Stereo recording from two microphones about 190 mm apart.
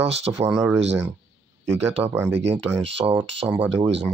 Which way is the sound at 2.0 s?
10° right (ahead or behind).